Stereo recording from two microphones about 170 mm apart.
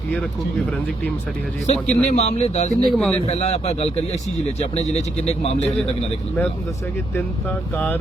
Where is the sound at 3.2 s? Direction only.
40° left (ahead or behind).